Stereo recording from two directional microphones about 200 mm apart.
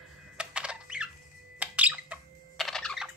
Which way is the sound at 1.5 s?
5° right (ahead or behind).